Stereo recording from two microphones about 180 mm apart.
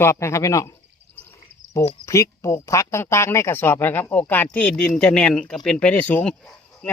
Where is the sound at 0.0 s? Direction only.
15° left (ahead or behind).